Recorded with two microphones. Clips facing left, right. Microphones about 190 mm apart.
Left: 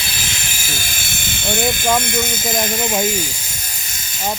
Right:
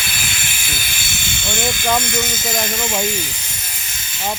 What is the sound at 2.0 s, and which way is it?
Speech, 55° left (ahead or behind).